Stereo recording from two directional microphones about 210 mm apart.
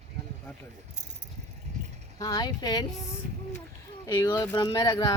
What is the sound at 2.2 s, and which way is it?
Speech, 20° left (ahead or behind).